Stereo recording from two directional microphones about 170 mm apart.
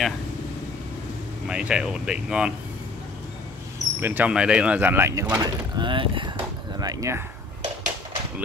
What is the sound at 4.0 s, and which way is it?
Speech, 10° right (ahead or behind).